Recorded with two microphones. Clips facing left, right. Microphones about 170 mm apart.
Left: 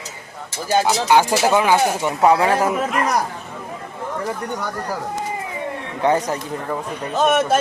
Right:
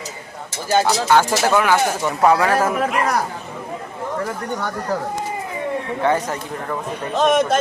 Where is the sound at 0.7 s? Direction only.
15° left (ahead or behind).